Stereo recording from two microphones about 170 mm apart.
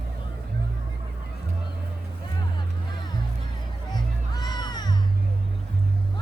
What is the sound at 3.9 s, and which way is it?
Music, 25° left (ahead or behind).